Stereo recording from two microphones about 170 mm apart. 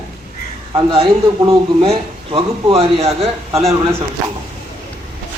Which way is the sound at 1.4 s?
35° right (ahead or behind).